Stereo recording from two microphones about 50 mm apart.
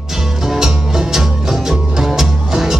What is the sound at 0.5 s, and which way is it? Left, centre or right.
Music, centre.